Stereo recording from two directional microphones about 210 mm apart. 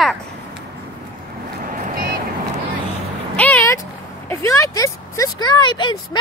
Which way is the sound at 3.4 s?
10° left (ahead or behind).